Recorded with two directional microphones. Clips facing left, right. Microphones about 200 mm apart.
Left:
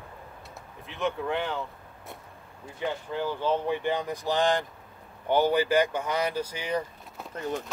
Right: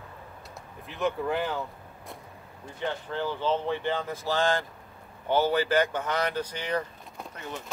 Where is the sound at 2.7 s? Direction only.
10° left (ahead or behind).